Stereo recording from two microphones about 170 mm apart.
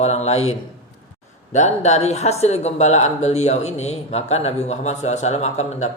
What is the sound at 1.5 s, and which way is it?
Speech, 45° left (ahead or behind).